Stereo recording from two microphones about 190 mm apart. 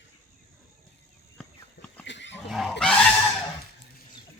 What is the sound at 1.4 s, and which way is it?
Horse, 5° left (ahead or behind).